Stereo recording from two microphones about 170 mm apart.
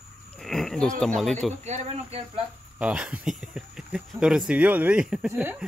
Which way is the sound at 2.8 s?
5° right (ahead or behind).